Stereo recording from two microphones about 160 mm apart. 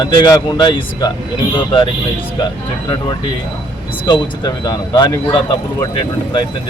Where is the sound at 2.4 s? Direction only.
30° left (ahead or behind).